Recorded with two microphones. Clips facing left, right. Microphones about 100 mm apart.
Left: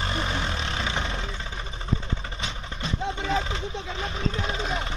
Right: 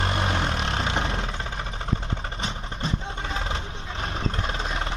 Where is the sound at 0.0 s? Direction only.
55° right (ahead or behind).